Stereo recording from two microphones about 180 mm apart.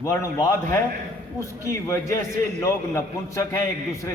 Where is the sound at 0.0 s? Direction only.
15° left (ahead or behind).